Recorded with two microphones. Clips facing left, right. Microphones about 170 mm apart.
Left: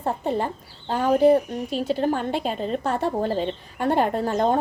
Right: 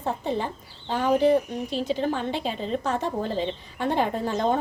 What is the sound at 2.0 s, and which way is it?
Speech, 45° left (ahead or behind).